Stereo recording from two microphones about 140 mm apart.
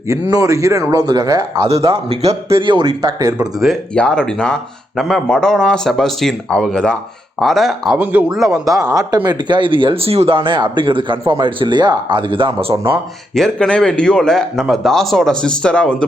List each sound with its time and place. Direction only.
0.1 s speech: 25° right (ahead or behind)
1.9 s speech: 45° right (ahead or behind); by 3.3 s 25° right (ahead or behind)
3.3 s speech: centre (ahead or behind)
9.0 s speech: 30° right (ahead or behind)
13.3 s speech: 5° left (ahead or behind)